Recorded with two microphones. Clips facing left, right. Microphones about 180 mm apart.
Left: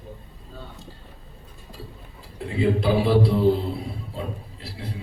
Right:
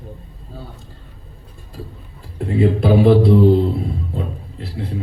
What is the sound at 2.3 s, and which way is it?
A man's voice, 50° right (ahead or behind).